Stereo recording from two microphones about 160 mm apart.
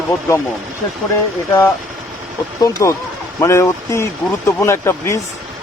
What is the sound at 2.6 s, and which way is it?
Speech, 20° left (ahead or behind).